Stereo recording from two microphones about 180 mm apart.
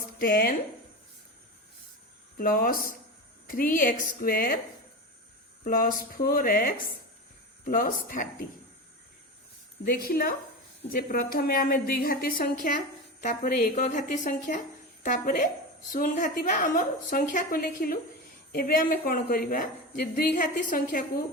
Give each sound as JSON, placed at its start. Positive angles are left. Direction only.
{"t": 0.2, "sound": "a woman's voice", "side_deg": 50}
{"t": 2.4, "sound": "a woman's voice", "side_deg": 55}
{"t": 5.6, "sound": "a woman's voice", "side_deg": 50}
{"t": 9.8, "sound": "a woman's voice", "side_deg": 55}